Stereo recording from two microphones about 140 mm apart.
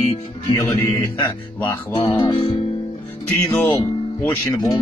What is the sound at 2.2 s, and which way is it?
Speech, 40° left (ahead or behind).